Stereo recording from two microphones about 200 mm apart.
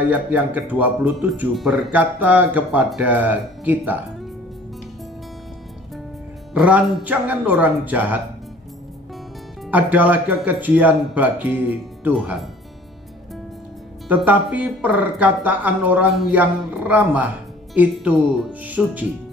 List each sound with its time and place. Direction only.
0.1 s speech: 5° right (ahead or behind)
6.5 s speech: 5° right (ahead or behind)
9.7 s speech: 10° right (ahead or behind)
14.0 s speech: 10° right (ahead or behind)